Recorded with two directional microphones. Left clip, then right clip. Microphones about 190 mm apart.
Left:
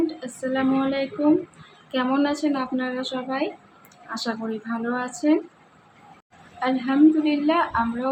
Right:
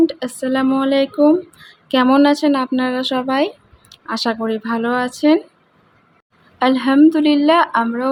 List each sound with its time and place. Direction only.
0.1 s speech: 55° right (ahead or behind)
6.6 s speech: 55° right (ahead or behind)